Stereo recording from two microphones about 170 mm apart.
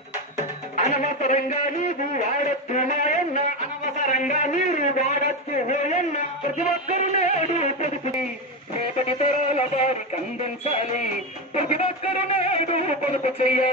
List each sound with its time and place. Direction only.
0.7 s a man's voice: 45° left (ahead or behind)
8.9 s music: 40° left (ahead or behind)
12.3 s music: 35° left (ahead or behind)